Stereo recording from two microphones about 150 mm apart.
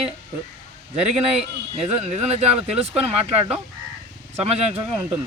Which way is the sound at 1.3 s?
45° right (ahead or behind).